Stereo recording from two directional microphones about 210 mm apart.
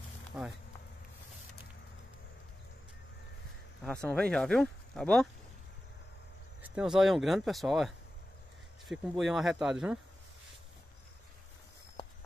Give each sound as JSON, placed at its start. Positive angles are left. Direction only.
{"t": 0.3, "sound": "speech", "side_deg": -5}
{"t": 3.8, "sound": "speech", "side_deg": 5}
{"t": 6.6, "sound": "speech", "side_deg": -5}